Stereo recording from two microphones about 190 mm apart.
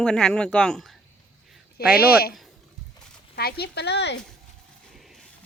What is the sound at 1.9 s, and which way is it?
Speech, 55° left (ahead or behind).